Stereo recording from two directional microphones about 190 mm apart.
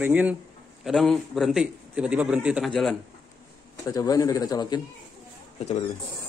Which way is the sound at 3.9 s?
20° left (ahead or behind).